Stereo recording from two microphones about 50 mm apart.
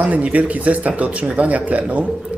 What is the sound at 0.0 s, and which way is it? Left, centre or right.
Speech, right.